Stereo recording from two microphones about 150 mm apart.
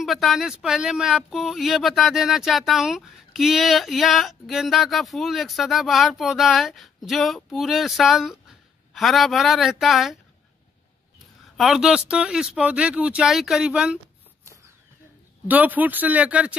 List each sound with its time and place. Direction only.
0.0 s speech: centre (ahead or behind)
11.5 s speech: centre (ahead or behind)
15.4 s speech: 10° right (ahead or behind)